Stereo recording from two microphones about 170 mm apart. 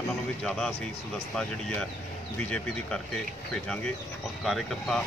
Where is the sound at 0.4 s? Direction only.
Centre (ahead or behind).